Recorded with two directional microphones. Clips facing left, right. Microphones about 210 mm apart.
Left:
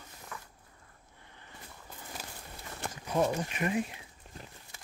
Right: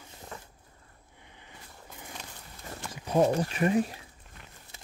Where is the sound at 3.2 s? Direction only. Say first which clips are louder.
Right 6 dB; 35° right (ahead or behind).